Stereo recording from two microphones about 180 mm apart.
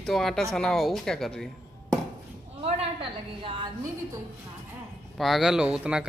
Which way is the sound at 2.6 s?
30° right (ahead or behind).